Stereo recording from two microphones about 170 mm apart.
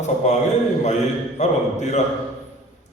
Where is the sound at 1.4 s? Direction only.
45° left (ahead or behind).